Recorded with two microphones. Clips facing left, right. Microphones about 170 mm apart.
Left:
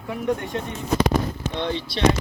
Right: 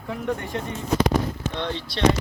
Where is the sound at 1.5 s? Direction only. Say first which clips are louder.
Left 3 dB; 10° left (ahead or behind).